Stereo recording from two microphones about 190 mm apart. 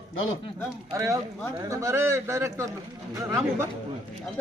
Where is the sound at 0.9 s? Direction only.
15° right (ahead or behind).